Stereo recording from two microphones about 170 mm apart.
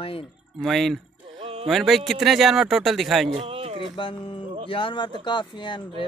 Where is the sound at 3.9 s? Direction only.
30° left (ahead or behind).